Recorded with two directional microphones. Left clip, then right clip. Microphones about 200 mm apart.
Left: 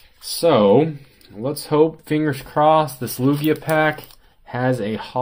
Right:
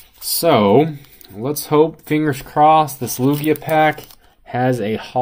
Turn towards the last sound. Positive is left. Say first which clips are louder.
# right 2 dB
turn(degrees=-25)  # may be behind; listen again after turning